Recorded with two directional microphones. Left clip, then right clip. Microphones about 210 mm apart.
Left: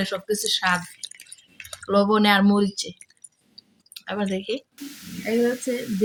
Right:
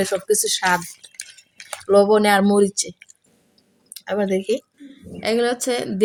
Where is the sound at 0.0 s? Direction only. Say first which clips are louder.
Right 6 dB; 50° right (ahead or behind).